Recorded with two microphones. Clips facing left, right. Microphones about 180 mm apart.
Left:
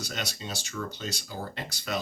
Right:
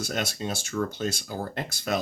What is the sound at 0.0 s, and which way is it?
Speech, 50° right (ahead or behind).